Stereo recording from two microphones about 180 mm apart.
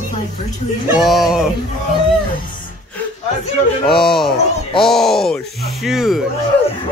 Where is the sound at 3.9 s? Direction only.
Centre (ahead or behind).